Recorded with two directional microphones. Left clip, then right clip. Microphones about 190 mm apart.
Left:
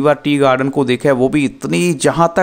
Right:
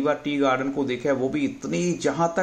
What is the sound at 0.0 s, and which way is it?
Speech, 55° left (ahead or behind).